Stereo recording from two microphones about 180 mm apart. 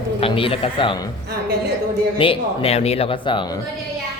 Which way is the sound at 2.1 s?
30° left (ahead or behind).